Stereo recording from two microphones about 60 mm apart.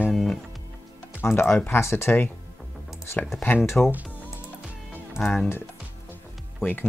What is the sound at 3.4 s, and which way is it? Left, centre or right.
Speech, left.